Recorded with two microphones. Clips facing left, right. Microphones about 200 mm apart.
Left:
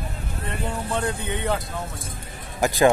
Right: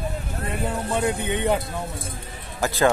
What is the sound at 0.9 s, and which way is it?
Speech, 15° right (ahead or behind).